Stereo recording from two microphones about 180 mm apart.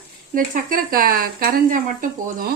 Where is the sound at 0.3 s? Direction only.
50° right (ahead or behind).